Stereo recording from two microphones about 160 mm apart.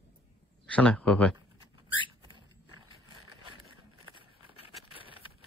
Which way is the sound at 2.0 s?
30° right (ahead or behind).